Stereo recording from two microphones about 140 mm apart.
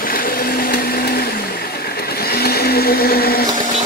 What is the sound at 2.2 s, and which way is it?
Vehicle, 90° left.